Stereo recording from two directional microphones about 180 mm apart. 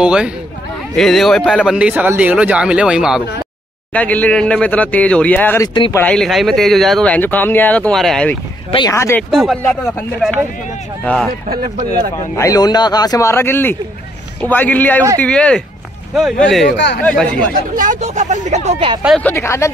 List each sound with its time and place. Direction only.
0.0 s speech: 5° right (ahead or behind)
1.8 s speech: 10° right (ahead or behind)
3.9 s speech: 10° left (ahead or behind)
8.7 s speech: 20° left (ahead or behind)
9.3 s speech: centre (ahead or behind)
9.6 s speech: 10° left (ahead or behind)
11.4 s speech: 50° right (ahead or behind)
12.4 s a man's voice: 20° left (ahead or behind); by 16.7 s centre (ahead or behind)
16.7 s speech: 70° left (ahead or behind)
17.0 s speech: 5° left (ahead or behind)
17.7 s speech: 45° right (ahead or behind)
19.2 s speech: 15° left (ahead or behind)